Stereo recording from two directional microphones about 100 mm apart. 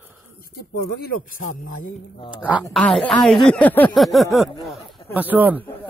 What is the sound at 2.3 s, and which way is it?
Speech, 15° right (ahead or behind).